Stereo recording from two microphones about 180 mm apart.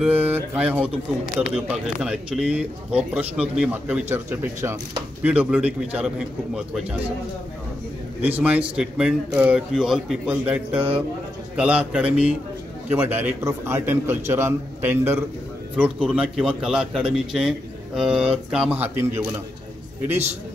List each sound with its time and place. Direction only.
0.0 s speech: 10° right (ahead or behind)
2.0 s a man's voice: 5° right (ahead or behind)
8.2 s a man's voice: 10° right (ahead or behind)